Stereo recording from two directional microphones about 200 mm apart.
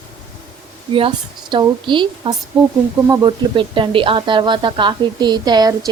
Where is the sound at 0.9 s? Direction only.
25° right (ahead or behind).